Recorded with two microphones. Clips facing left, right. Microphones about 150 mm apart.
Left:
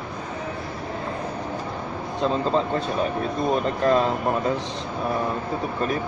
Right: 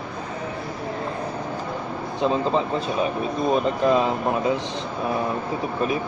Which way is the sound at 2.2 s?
15° right (ahead or behind).